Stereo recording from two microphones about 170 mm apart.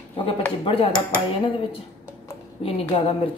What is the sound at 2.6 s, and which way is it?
Speech, 35° left (ahead or behind).